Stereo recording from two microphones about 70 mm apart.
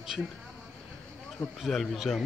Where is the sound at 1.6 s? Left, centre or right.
Centre.